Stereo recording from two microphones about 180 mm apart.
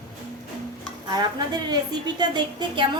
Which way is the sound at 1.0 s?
20° right (ahead or behind).